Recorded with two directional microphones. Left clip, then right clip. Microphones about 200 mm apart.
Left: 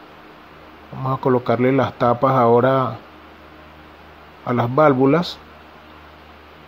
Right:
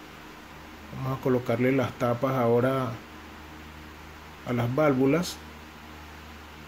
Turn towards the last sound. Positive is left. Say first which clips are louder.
# left 8 dB
turn(degrees=20)  # may be behind; listen again after turning